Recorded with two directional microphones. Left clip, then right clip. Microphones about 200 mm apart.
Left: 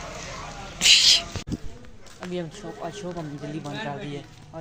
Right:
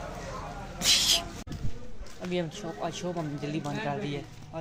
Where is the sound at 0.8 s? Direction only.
5° right (ahead or behind).